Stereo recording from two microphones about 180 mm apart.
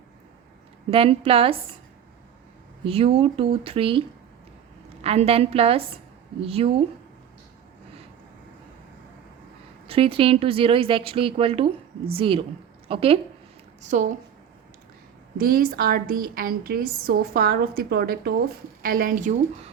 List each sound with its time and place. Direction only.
0.9 s speech: 30° right (ahead or behind)
2.8 s speech: 30° right (ahead or behind)
5.0 s speech: 35° right (ahead or behind)
9.8 s a woman's voice: 30° right (ahead or behind)
13.8 s a woman's voice: 40° right (ahead or behind)
15.4 s a woman's voice: 55° right (ahead or behind)